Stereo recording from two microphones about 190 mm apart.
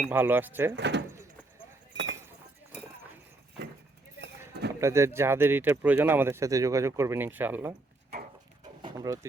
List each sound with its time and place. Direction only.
0.0 s speech: 10° right (ahead or behind)
0.8 s speech: 65° right (ahead or behind)
4.7 s speech: 15° right (ahead or behind)
8.8 s a sound: 20° right (ahead or behind)